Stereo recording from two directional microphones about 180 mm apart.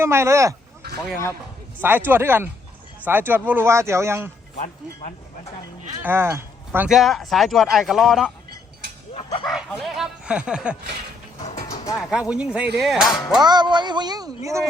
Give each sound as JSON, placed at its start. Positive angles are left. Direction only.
{"t": 0.0, "sound": "speech", "side_deg": -15}
{"t": 1.8, "sound": "speech", "side_deg": -10}
{"t": 4.5, "sound": "speech", "side_deg": 45}
{"t": 6.0, "sound": "speech", "side_deg": -10}
{"t": 9.1, "sound": "speech", "side_deg": 30}
{"t": 9.5, "sound": "speech", "side_deg": 0}
{"t": 11.4, "sound": "a sound", "side_deg": 45}
{"t": 12.3, "sound": "speech", "side_deg": -5}
{"t": 13.4, "sound": "speech", "side_deg": -25}